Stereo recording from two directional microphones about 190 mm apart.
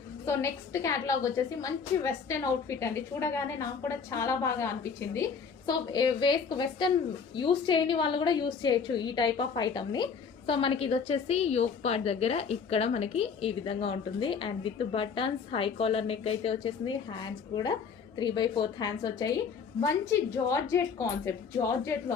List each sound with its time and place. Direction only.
0.3 s a woman's voice: 15° left (ahead or behind)
21.6 s a woman's voice: 25° left (ahead or behind)
21.9 s a woman's voice: 15° left (ahead or behind)